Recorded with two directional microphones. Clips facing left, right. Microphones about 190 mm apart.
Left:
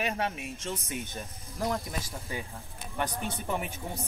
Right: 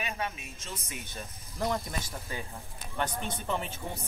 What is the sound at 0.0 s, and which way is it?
Speech, 70° left (ahead or behind).